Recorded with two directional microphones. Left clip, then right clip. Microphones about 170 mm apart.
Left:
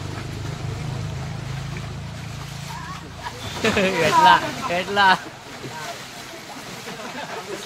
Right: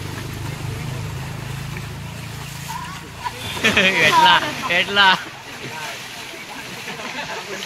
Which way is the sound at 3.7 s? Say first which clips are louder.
Right 4 dB; 35° left (ahead or behind).